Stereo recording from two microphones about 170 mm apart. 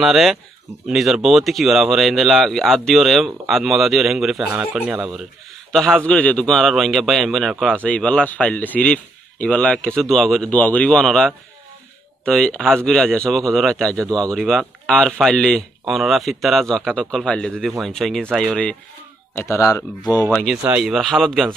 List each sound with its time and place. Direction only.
0.0 s a man's voice: centre (ahead or behind)
5.7 s a man's voice: 5° left (ahead or behind)
19.3 s speech: 15° left (ahead or behind)
20.4 s a man's voice: 5° right (ahead or behind)